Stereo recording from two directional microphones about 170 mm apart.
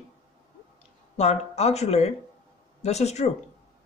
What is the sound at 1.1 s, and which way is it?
Speech, 40° left (ahead or behind).